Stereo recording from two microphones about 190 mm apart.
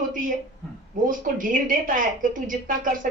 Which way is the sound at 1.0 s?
45° right (ahead or behind).